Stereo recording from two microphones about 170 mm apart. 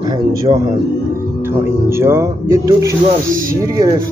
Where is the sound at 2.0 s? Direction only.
15° right (ahead or behind).